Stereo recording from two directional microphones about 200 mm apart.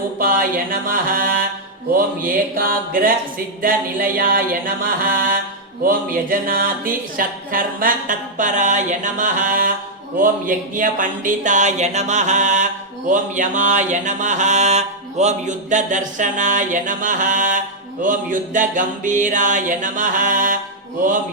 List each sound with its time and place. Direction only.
0.2 s music: 45° right (ahead or behind)
5.8 s mantra: 45° right (ahead or behind)